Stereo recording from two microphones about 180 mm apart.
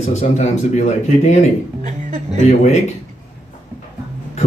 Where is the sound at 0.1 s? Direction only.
40° left (ahead or behind).